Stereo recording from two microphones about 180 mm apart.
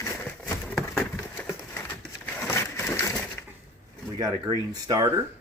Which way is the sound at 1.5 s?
10° left (ahead or behind).